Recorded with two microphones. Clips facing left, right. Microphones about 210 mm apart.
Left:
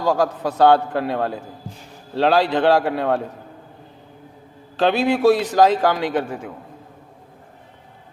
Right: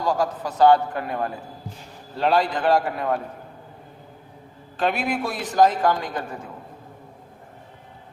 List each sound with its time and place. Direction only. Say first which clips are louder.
0.2 s a man's voice: left 2 dB; 70° left (ahead or behind)
4.8 s a man's voice: left 7 dB; 80° left